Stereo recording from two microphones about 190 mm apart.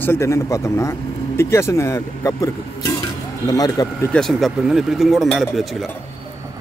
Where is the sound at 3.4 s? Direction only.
20° left (ahead or behind).